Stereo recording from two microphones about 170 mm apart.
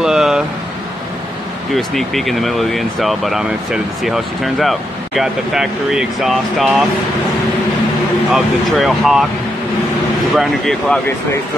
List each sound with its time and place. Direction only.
0.0 s vehicle: 5° right (ahead or behind)
1.7 s speech: centre (ahead or behind)
8.3 s speech: centre (ahead or behind)
10.3 s speech: centre (ahead or behind)